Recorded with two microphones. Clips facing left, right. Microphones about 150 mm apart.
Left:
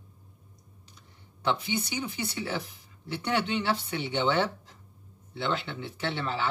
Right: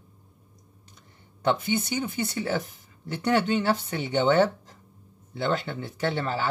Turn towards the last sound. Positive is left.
turn(degrees=-40)  # may be behind; listen again after turning